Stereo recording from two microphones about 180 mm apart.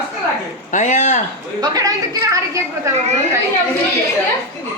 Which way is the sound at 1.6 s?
20° right (ahead or behind).